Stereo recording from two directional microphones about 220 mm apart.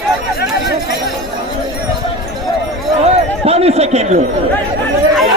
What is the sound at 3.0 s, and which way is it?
Chatter, 30° right (ahead or behind).